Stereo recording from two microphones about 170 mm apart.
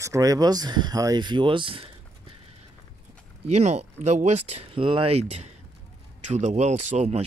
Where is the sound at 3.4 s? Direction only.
40° right (ahead or behind).